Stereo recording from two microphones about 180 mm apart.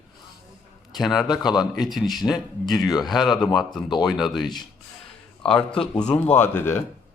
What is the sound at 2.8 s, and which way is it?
Speech, centre (ahead or behind).